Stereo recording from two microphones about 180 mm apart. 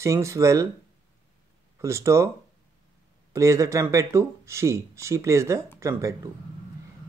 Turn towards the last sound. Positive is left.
turn(degrees=-15)  # may be behind; listen again after turning